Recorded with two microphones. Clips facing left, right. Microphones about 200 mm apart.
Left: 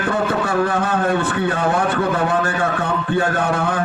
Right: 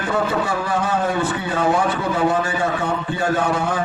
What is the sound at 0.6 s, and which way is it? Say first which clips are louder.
A man's voice: left 3 dB; 60° left (ahead or behind).